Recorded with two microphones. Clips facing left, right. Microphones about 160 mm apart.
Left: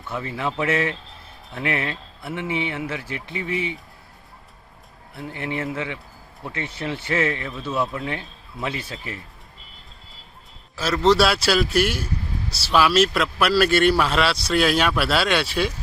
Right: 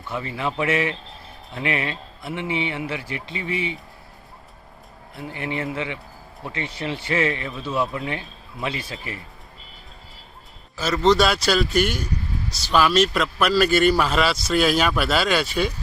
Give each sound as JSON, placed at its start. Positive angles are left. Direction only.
{"t": 0.1, "sound": "speech", "side_deg": -15}
{"t": 5.1, "sound": "speech", "side_deg": -15}
{"t": 7.9, "sound": "speech", "side_deg": -5}
{"t": 10.8, "sound": "speech", "side_deg": 0}